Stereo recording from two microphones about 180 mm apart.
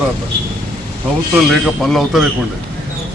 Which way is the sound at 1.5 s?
Centre (ahead or behind).